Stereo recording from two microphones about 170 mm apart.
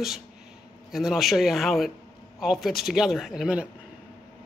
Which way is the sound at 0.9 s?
Centre (ahead or behind).